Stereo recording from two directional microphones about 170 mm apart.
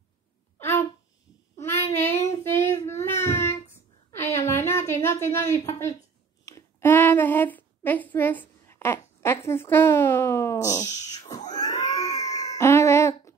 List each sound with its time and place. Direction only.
0.6 s a sound: 15° left (ahead or behind)
1.6 s child singing: 15° left (ahead or behind)
5.0 s speech: 15° left (ahead or behind)
11.5 s cat: 20° left (ahead or behind)